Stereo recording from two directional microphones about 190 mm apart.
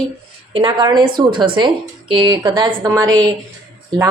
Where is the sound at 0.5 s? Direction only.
25° right (ahead or behind).